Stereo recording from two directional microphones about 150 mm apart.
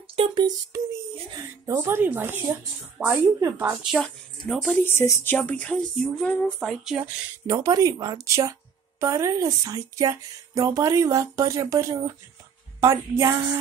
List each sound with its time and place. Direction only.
0.0 s speech: 40° right (ahead or behind)
1.7 s a woman's voice: 20° right (ahead or behind); by 4.7 s centre (ahead or behind)
4.8 s speech: 15° left (ahead or behind)
6.7 s a woman's voice: 5° right (ahead or behind)
7.4 s speech: 20° right (ahead or behind)